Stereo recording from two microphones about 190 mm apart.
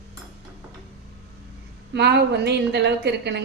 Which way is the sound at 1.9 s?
65° right (ahead or behind).